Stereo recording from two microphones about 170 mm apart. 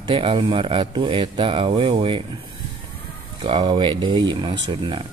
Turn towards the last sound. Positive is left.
turn(degrees=-30)  # may be behind; listen again after turning